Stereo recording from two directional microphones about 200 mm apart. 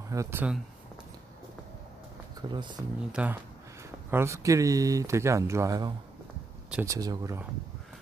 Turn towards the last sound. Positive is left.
turn(degrees=-15)  # may be behind; listen again after turning